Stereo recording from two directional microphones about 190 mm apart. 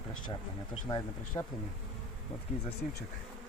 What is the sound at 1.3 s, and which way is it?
Bee, 25° left (ahead or behind).